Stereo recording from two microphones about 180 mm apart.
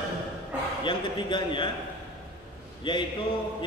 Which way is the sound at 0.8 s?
25° left (ahead or behind).